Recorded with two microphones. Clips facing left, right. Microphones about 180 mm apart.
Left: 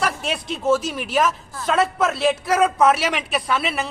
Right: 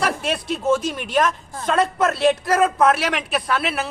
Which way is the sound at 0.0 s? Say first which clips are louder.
Right 2 dB; centre (ahead or behind).